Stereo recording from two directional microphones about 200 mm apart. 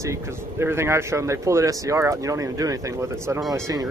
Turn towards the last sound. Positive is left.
turn(degrees=-15)  # may be behind; listen again after turning